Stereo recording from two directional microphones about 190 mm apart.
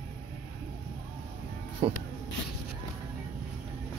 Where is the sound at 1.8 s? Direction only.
30° right (ahead or behind).